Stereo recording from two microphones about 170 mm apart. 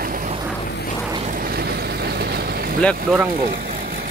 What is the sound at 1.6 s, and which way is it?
Vehicle, 70° right (ahead or behind).